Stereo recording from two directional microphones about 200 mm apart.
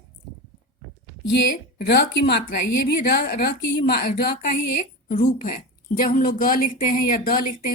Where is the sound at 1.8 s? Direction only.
55° left (ahead or behind).